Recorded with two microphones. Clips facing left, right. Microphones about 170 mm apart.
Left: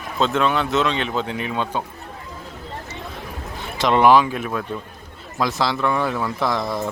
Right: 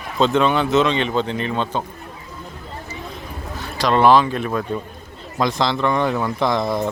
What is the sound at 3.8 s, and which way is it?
Speech, 15° left (ahead or behind).